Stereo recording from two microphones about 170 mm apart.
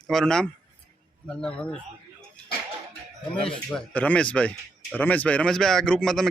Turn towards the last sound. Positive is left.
turn(degrees=5)  # may be behind; listen again after turning